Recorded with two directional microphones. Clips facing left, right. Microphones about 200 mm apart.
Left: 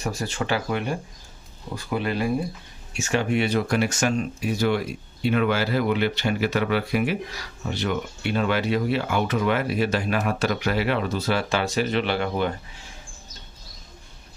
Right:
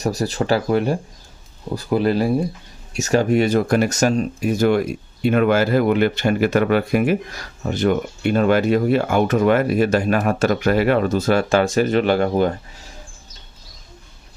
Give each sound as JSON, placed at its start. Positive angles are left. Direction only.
{"t": 0.0, "sound": "speech", "side_deg": -40}